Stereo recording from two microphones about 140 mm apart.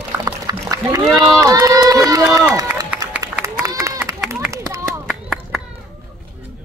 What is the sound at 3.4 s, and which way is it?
Run, 20° right (ahead or behind).